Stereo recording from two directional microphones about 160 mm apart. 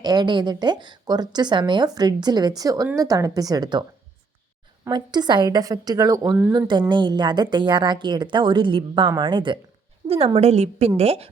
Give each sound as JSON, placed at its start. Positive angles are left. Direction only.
{"t": 0.0, "sound": "a woman's voice", "side_deg": -25}
{"t": 4.9, "sound": "a woman's voice", "side_deg": -25}
{"t": 6.5, "sound": "a woman's voice", "side_deg": -25}